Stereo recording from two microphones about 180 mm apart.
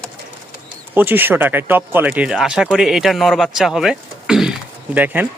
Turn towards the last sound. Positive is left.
turn(degrees=-10)  # may be behind; listen again after turning